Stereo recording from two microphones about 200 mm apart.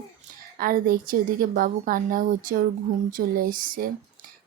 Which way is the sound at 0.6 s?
45° right (ahead or behind).